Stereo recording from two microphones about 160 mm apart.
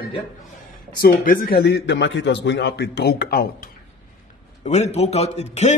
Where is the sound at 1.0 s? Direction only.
70° left (ahead or behind).